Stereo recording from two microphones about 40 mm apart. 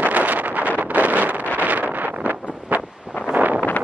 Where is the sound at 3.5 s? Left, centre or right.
Left.